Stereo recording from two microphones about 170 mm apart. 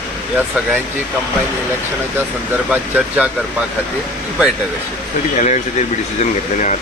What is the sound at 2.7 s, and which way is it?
Speech, 10° right (ahead or behind).